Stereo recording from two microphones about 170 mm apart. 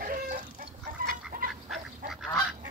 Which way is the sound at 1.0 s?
55° right (ahead or behind).